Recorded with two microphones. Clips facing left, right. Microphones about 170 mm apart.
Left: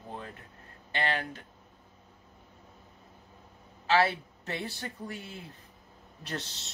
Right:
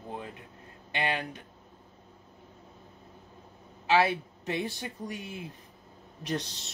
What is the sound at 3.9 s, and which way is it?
A man's voice, 15° right (ahead or behind).